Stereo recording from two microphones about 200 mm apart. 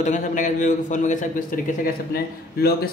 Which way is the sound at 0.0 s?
40° left (ahead or behind).